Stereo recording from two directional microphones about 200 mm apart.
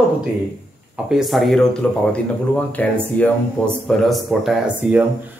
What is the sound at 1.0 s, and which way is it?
Speech, centre (ahead or behind).